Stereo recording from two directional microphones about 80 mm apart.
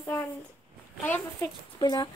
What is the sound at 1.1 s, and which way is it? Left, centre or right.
Speech, left.